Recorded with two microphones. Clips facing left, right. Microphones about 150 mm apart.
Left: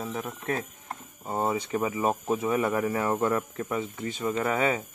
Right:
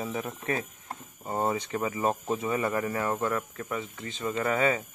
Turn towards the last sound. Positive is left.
turn(degrees=15)  # may be behind; listen again after turning